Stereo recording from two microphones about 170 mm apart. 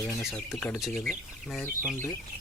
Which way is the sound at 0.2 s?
15° left (ahead or behind).